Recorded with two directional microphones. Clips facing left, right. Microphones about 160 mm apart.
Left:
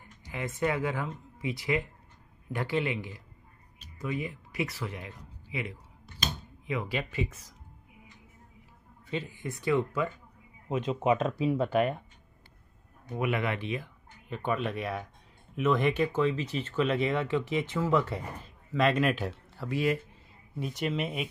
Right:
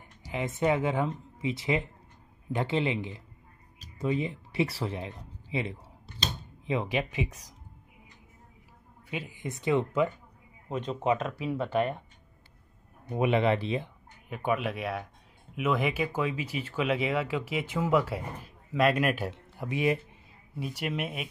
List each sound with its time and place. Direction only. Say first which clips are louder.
0.3 s speech: right 3 dB; 20° right (ahead or behind)
9.1 s speech: left 1 dB; 15° right (ahead or behind)
10.9 s speech: left 1 dB; 10° left (ahead or behind)
13.2 s speech: right 5 dB; 25° right (ahead or behind)
14.3 s speech: right 1 dB; 5° right (ahead or behind)
19.3 s speech: even; 20° right (ahead or behind)
20.5 s speech: left 2 dB; 10° right (ahead or behind)